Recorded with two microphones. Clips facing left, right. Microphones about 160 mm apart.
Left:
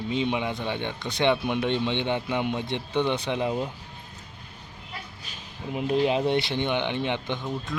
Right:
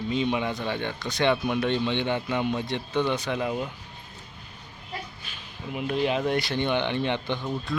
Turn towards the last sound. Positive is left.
turn(degrees=15)  # may be behind; listen again after turning